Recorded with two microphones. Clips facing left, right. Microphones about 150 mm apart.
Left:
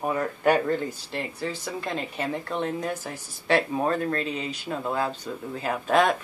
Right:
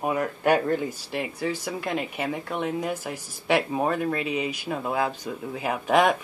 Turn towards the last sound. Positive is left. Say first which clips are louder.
# right 1 dB
turn(degrees=-15)  # may be behind; listen again after turning